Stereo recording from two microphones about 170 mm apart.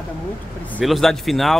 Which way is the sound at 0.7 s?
Centre (ahead or behind).